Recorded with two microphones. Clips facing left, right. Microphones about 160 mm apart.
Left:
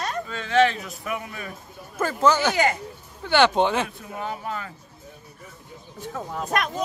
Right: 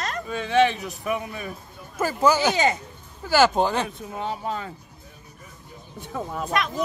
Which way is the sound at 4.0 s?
25° right (ahead or behind).